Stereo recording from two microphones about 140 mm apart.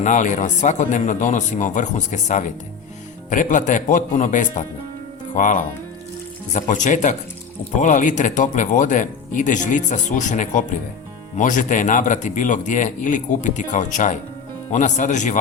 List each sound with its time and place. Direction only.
0.0 s speech: 65° left (ahead or behind)